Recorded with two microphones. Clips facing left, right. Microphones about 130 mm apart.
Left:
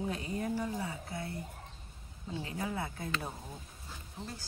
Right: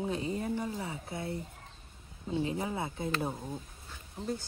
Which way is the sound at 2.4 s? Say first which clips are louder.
Right 2 dB; 25° right (ahead or behind).